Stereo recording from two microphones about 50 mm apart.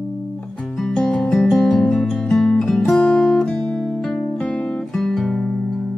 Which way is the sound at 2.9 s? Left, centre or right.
Centre.